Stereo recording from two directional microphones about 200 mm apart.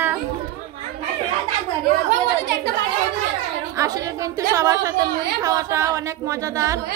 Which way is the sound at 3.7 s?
15° right (ahead or behind).